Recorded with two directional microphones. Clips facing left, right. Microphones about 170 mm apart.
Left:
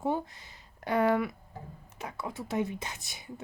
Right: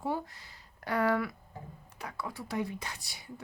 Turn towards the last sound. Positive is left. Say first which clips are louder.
# left 2 dB
turn(degrees=20)  # may be behind; listen again after turning